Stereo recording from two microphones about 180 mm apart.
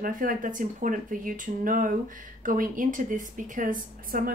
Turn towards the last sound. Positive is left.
turn(degrees=-50)  # may be behind; listen again after turning